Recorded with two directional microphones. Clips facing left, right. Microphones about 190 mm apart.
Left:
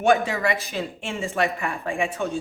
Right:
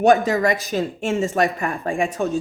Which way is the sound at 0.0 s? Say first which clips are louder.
Right 5 dB; 40° right (ahead or behind).